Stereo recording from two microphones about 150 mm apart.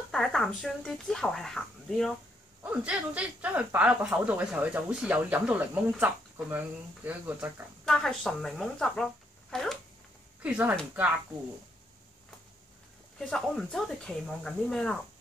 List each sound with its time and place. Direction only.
0.1 s speech: 5° left (ahead or behind)
2.6 s speech: 10° right (ahead or behind)
7.8 s a woman's voice: centre (ahead or behind)
10.4 s speech: 10° right (ahead or behind)
13.2 s speech: 5° left (ahead or behind)